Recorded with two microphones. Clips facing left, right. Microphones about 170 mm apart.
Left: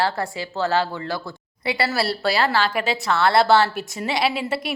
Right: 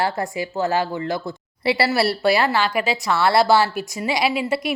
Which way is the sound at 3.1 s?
5° right (ahead or behind).